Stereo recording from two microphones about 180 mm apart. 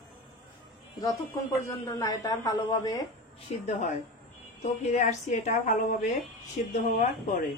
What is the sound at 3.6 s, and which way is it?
A woman's voice, 40° left (ahead or behind).